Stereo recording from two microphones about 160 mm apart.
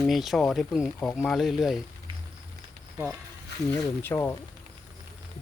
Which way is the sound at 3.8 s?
15° left (ahead or behind).